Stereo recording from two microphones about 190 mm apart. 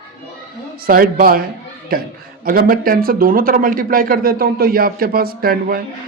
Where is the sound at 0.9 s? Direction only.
50° right (ahead or behind).